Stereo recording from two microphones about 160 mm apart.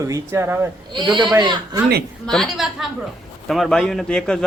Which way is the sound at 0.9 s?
30° right (ahead or behind).